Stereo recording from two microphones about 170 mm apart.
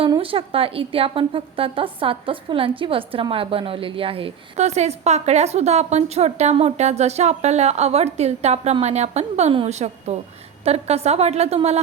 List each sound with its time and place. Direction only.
0.1 s a woman's voice: 30° right (ahead or behind)